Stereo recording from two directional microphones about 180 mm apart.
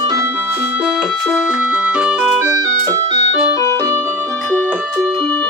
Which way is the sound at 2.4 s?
15° right (ahead or behind).